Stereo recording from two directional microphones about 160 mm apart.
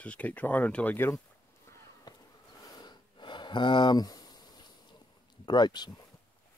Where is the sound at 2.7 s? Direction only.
30° left (ahead or behind).